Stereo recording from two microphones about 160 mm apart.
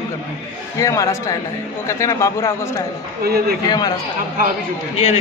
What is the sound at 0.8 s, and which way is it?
A man's voice, 20° left (ahead or behind).